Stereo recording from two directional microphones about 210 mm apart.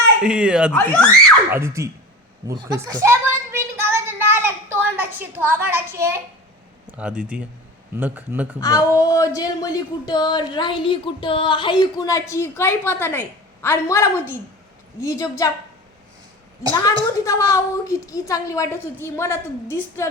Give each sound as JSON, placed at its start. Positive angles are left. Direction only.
{"t": 0.2, "sound": "speech", "side_deg": -5}
{"t": 0.7, "sound": "speech", "side_deg": 5}
{"t": 1.5, "sound": "a man's voice", "side_deg": -10}
{"t": 2.5, "sound": "a sound", "side_deg": -15}
{"t": 6.9, "sound": "a man's voice", "side_deg": -5}
{"t": 8.6, "sound": "speech", "side_deg": 15}
{"t": 17.2, "sound": "speech", "side_deg": 15}